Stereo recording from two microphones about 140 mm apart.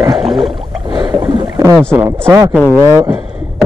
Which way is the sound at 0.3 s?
Centre (ahead or behind).